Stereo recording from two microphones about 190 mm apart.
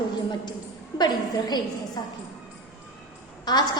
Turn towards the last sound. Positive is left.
turn(degrees=20)  # may be behind; listen again after turning